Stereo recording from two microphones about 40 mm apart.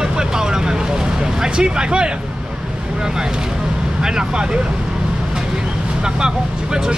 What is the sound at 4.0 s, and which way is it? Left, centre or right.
Speech, centre.